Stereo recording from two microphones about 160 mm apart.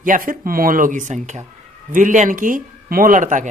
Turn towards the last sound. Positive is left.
turn(degrees=-50)  # may be behind; listen again after turning